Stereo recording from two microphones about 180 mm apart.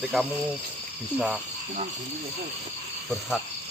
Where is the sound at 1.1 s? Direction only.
5° right (ahead or behind).